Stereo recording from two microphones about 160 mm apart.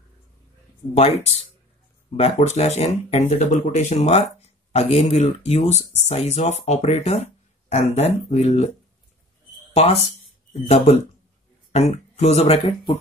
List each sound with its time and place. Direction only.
0.9 s speech: 40° left (ahead or behind)
10.5 s speech: 40° left (ahead or behind)